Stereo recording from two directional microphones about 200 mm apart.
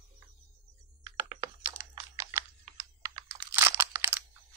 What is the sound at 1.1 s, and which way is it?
Computer keyboard, 20° right (ahead or behind).